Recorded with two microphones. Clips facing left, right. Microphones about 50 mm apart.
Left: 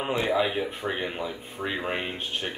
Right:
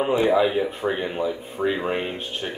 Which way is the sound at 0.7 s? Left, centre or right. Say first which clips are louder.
Right 5 dB; centre.